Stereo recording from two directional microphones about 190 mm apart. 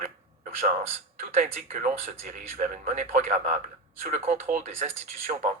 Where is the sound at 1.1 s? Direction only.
35° right (ahead or behind).